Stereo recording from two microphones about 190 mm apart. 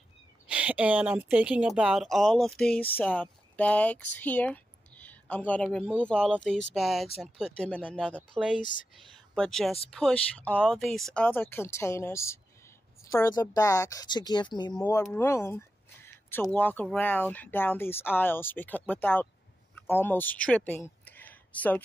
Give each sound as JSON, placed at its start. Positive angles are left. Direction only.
{"t": 0.5, "sound": "a woman's voice", "side_deg": -5}